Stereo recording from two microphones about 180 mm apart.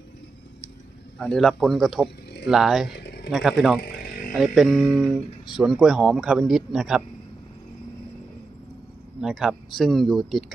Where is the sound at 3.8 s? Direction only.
55° left (ahead or behind).